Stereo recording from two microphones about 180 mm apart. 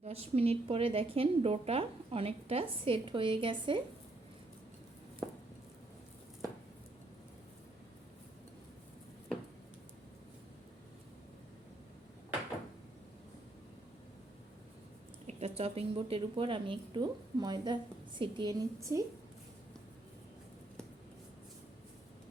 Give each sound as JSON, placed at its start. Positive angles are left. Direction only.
{"t": 0.0, "sound": "a woman's voice", "side_deg": -35}
{"t": 15.3, "sound": "a woman's voice", "side_deg": -35}